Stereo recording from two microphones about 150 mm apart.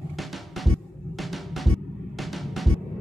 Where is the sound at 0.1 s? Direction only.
Centre (ahead or behind).